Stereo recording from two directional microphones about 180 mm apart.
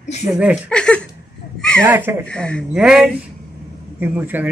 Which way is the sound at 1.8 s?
10° right (ahead or behind).